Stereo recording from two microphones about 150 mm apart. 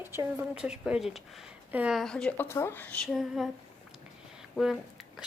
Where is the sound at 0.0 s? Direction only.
15° right (ahead or behind).